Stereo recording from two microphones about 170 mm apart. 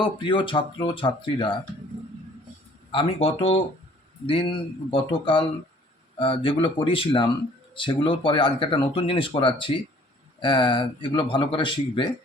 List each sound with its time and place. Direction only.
0.0 s speech: 30° left (ahead or behind)
2.9 s speech: 35° left (ahead or behind)